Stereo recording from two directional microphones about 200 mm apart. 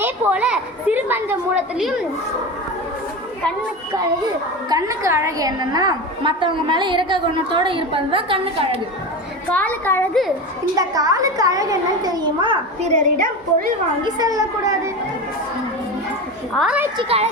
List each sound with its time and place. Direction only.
0.0 s a woman's voice: 5° right (ahead or behind)
4.7 s a woman's voice: 15° right (ahead or behind)
9.5 s a woman's voice: 10° left (ahead or behind)
10.8 s a child's voice: 20° right (ahead or behind)
12.9 s a woman's voice: 45° right (ahead or behind)
14.0 s a child's voice: 20° right (ahead or behind)
16.6 s a woman's voice: 5° right (ahead or behind)
17.0 s a woman's voice: 30° right (ahead or behind)